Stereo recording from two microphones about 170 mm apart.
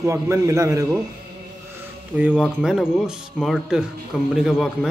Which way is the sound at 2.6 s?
5° right (ahead or behind).